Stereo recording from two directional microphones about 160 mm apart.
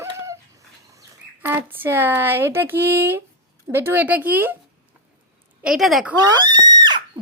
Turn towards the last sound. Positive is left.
turn(degrees=-25)  # may be behind; listen again after turning